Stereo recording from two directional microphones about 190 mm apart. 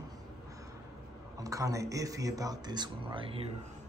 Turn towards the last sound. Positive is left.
turn(degrees=-25)  # may be behind; listen again after turning